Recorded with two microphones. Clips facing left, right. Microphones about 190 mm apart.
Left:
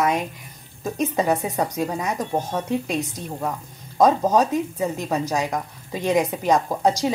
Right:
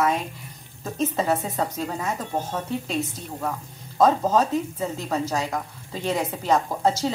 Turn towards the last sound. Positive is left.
turn(degrees=15)  # may be behind; listen again after turning